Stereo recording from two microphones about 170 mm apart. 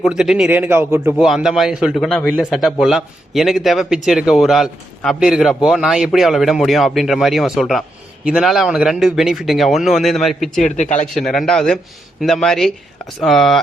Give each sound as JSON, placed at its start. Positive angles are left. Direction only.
{"t": 0.0, "sound": "a man's voice", "side_deg": -5}
{"t": 1.1, "sound": "speech", "side_deg": 0}
{"t": 10.6, "sound": "speech", "side_deg": 45}
{"t": 11.1, "sound": "speech", "side_deg": 0}